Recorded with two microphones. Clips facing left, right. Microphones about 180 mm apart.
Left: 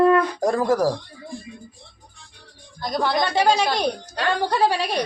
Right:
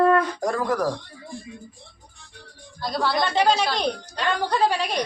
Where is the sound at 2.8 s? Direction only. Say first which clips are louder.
Left 2 dB; 15° left (ahead or behind).